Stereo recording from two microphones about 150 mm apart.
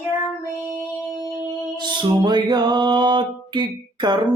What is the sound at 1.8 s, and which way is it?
Music, 30° right (ahead or behind).